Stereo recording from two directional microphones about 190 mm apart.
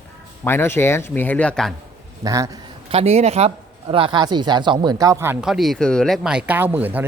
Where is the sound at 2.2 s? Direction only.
20° right (ahead or behind).